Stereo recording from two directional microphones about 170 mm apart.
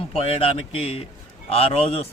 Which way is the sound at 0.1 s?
35° left (ahead or behind).